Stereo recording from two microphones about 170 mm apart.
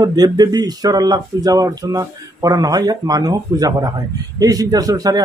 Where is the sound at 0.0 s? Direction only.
25° right (ahead or behind).